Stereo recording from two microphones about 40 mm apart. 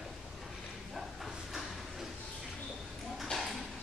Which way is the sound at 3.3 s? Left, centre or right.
Centre.